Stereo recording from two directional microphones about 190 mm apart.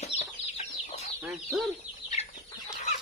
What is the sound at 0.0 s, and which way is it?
Chicken, 35° left (ahead or behind).